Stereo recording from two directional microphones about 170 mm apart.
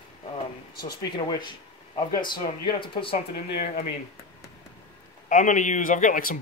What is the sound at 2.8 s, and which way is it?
Speech, 30° left (ahead or behind).